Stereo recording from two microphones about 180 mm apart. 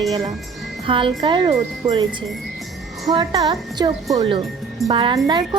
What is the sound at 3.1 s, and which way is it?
Speech, 20° right (ahead or behind).